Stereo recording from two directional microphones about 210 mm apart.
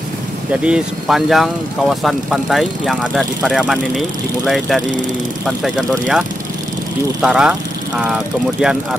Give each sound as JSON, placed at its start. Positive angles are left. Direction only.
{"t": 0.5, "sound": "speech", "side_deg": -5}